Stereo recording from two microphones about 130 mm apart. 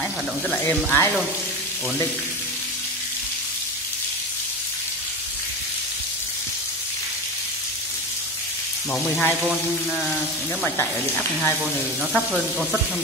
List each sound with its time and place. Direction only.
0.6 s speech: 20° left (ahead or behind)
8.9 s speech: 10° left (ahead or behind)
10.6 s speech: 15° left (ahead or behind)
11.6 s speech: 5° left (ahead or behind)